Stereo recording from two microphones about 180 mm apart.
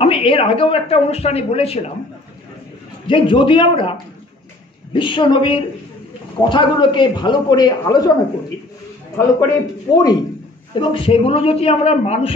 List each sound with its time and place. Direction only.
0.0 s speech: 30° left (ahead or behind)
3.1 s a man's voice: 30° left (ahead or behind)
4.9 s a man's voice: 25° left (ahead or behind)
9.4 s a man's voice: 20° left (ahead or behind)